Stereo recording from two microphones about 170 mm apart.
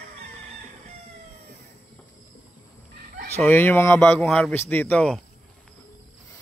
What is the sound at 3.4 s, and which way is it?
Speech, 10° left (ahead or behind).